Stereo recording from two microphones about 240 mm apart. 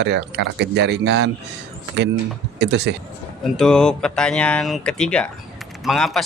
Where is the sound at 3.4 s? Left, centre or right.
Centre.